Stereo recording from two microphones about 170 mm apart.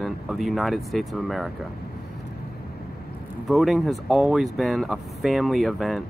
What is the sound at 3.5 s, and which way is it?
Speech, centre (ahead or behind).